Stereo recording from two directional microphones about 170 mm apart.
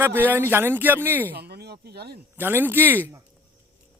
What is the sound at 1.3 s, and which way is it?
Speech, 70° right (ahead or behind).